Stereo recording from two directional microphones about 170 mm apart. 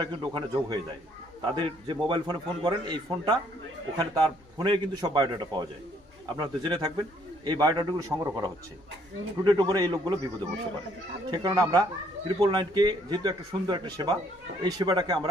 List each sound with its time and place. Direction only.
0.0 s a man's voice: 25° right (ahead or behind)
11.2 s a man's voice: 25° right (ahead or behind)